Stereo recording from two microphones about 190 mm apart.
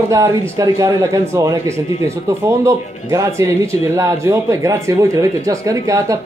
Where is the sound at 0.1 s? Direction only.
15° right (ahead or behind).